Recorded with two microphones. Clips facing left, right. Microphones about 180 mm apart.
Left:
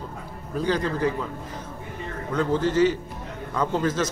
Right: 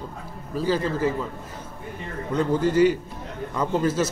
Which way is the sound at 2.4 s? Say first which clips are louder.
Right 1 dB; 10° right (ahead or behind).